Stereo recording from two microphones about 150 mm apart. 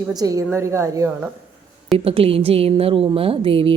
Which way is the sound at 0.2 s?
20° right (ahead or behind).